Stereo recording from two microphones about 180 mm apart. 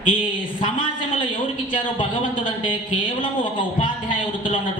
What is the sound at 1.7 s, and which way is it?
Speech, 30° left (ahead or behind).